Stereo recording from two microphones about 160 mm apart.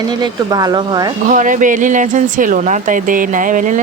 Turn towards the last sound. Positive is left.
turn(degrees=-55)  # may be behind; listen again after turning